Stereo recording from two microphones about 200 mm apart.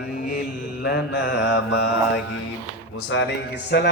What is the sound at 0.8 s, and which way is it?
Mantra, 55° left (ahead or behind).